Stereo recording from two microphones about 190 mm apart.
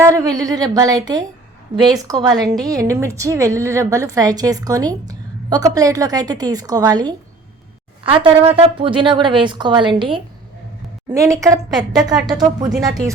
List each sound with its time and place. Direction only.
0.0 s a woman's voice: 15° right (ahead or behind)
12.7 s speech: centre (ahead or behind)